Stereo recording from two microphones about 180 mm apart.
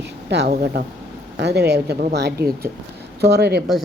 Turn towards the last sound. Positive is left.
turn(degrees=-65)  # may be behind; listen again after turning